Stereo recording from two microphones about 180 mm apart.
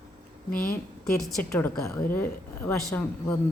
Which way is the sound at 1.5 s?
15° left (ahead or behind).